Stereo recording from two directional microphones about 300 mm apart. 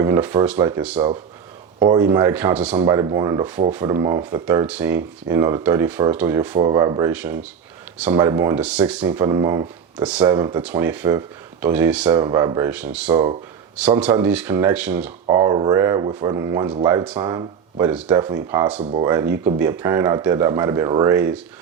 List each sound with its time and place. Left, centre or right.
0.0 s speech: centre
18.8 s speech: right
19.1 s speech: centre